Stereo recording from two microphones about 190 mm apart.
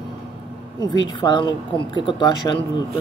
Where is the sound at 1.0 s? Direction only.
20° left (ahead or behind).